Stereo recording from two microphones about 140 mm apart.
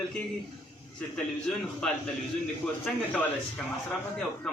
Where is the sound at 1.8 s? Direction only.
5° left (ahead or behind).